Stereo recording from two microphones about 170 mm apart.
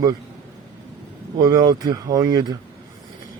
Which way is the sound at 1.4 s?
20° right (ahead or behind).